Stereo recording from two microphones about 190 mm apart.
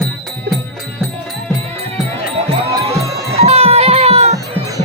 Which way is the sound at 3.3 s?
35° right (ahead or behind).